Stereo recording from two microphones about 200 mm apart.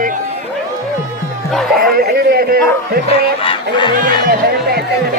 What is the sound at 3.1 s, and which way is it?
Fowl, 25° left (ahead or behind).